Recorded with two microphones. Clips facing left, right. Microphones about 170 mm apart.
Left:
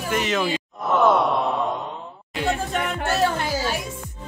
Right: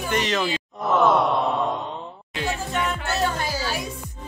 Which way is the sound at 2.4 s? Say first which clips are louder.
Left 2 dB; 55° left (ahead or behind).